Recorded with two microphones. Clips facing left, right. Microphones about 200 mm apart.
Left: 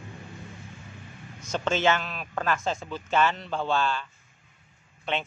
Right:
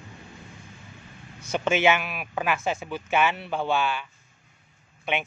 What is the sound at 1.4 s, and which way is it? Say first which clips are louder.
Speech: right 2 dB; 10° right (ahead or behind).